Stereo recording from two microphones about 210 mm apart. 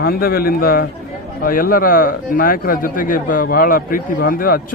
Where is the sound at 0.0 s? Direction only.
45° left (ahead or behind).